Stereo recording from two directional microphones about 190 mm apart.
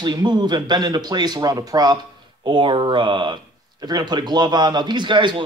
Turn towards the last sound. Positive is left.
turn(degrees=-25)  # may be behind; listen again after turning